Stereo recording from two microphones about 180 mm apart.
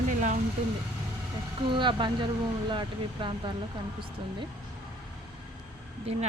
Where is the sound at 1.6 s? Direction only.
25° right (ahead or behind).